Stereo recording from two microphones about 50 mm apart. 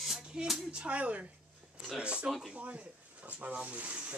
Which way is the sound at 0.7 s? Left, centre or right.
Right.